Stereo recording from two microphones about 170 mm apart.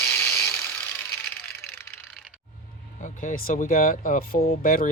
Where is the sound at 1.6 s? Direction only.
10° left (ahead or behind).